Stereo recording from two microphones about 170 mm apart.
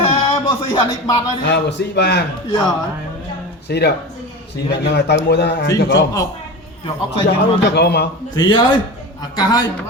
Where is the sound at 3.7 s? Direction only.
75° left (ahead or behind).